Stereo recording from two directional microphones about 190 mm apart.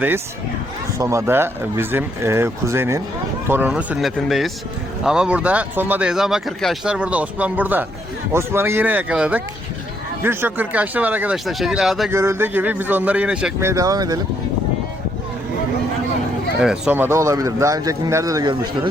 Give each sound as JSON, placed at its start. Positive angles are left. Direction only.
{"t": 0.9, "sound": "speech", "side_deg": -15}
{"t": 12.1, "sound": "speech", "side_deg": -15}
{"t": 16.6, "sound": "speech", "side_deg": -5}